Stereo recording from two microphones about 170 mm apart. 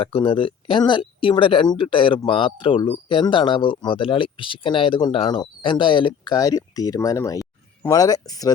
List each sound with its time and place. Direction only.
0.0 s speech: 30° left (ahead or behind)